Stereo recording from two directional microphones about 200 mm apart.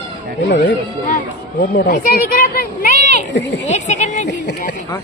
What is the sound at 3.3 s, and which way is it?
Speech, 65° left (ahead or behind).